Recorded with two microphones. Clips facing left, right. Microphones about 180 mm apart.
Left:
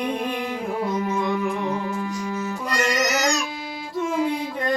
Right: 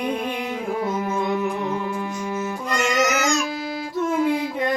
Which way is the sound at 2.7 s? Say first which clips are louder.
Right 2 dB; 35° left (ahead or behind).